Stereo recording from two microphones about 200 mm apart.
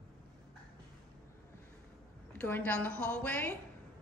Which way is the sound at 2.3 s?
10° left (ahead or behind).